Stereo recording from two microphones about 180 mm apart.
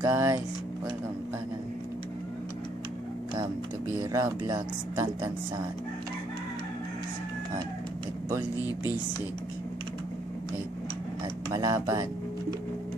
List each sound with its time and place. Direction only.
0.0 s speech: 15° right (ahead or behind)
4.0 s speech: 20° right (ahead or behind)
11.5 s speech: 20° right (ahead or behind)